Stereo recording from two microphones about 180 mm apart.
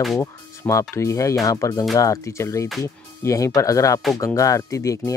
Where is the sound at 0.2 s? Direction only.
15° left (ahead or behind).